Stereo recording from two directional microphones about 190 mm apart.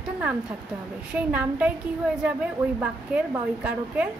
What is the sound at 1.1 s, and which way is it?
Speech, 5° right (ahead or behind).